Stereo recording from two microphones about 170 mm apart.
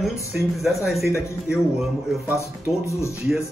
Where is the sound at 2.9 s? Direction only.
15° left (ahead or behind).